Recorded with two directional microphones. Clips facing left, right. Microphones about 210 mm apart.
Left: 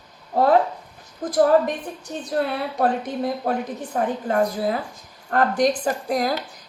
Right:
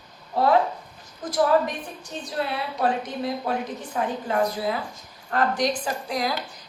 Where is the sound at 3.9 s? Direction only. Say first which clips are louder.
Left 3 dB; 45° left (ahead or behind).